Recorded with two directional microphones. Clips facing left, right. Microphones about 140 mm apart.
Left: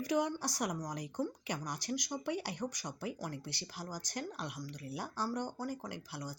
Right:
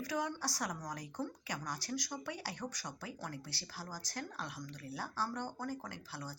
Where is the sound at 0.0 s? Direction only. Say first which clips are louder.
Left 5 dB; 20° left (ahead or behind).